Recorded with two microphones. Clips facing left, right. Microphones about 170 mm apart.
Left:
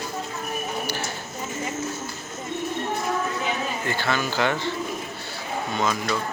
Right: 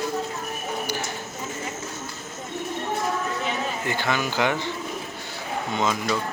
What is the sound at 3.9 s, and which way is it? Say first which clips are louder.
Speech: even; 15° right (ahead or behind).